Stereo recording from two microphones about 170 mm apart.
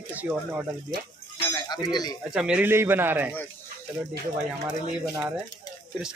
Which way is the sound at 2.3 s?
5° right (ahead or behind).